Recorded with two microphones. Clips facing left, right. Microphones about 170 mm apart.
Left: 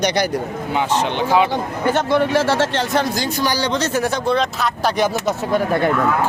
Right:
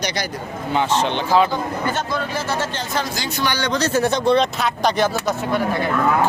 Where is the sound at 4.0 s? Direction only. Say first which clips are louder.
Right 5 dB; 5° left (ahead or behind).